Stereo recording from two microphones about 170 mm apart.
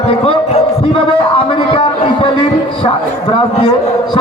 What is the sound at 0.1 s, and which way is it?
A man's voice, 35° left (ahead or behind).